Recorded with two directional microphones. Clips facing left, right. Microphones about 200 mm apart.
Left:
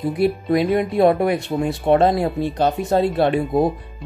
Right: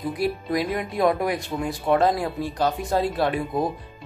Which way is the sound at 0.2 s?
25° left (ahead or behind).